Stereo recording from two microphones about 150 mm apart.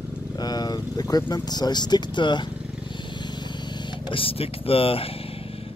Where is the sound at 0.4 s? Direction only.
25° left (ahead or behind).